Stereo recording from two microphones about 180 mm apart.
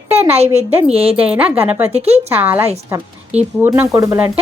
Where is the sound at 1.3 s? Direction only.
5° right (ahead or behind).